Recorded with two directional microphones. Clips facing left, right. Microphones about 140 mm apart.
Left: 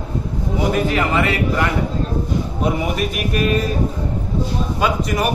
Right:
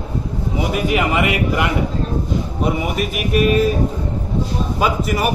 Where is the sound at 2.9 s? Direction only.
5° right (ahead or behind).